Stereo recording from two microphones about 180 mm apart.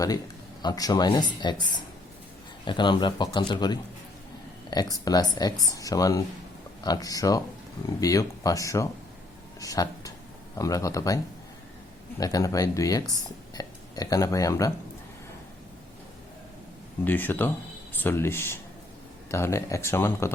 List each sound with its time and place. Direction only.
0.6 s speech: 20° left (ahead or behind)
17.0 s speech: 10° left (ahead or behind)